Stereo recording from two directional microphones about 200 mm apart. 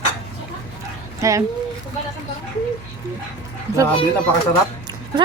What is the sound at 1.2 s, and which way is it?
Speech, 15° right (ahead or behind).